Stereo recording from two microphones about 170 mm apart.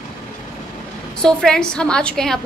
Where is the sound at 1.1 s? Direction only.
5° left (ahead or behind).